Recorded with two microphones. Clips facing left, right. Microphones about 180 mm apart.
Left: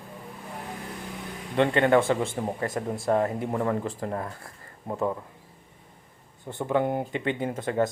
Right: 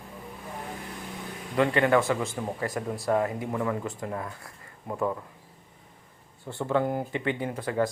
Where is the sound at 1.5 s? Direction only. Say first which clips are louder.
Left 2 dB; 25° left (ahead or behind).